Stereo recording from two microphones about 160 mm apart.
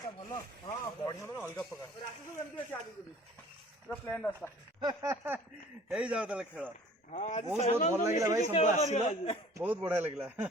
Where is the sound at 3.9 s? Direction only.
10° left (ahead or behind).